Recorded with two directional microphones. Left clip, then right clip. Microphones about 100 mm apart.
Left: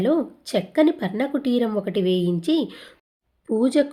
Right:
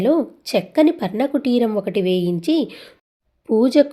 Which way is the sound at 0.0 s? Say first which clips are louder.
Right 4 dB; 20° right (ahead or behind).